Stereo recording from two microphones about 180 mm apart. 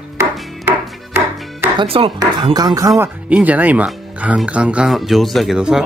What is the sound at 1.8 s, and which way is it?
Speech, 30° right (ahead or behind).